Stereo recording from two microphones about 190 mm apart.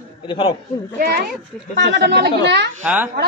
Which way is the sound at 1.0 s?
50° right (ahead or behind).